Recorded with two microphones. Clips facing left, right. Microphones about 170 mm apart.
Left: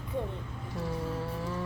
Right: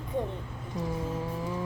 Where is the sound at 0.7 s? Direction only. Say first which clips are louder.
Right 2 dB; 20° right (ahead or behind).